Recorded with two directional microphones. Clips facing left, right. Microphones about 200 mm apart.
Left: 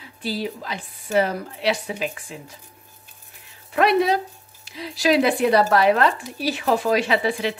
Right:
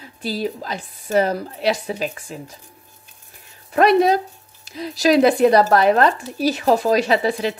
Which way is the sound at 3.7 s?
40° right (ahead or behind).